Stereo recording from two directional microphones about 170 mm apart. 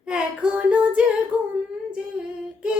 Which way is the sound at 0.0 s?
5° right (ahead or behind).